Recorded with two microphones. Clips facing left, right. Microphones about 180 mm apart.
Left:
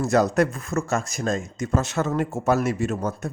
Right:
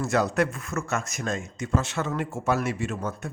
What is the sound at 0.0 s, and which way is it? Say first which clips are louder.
Speech: left 4 dB; 40° left (ahead or behind).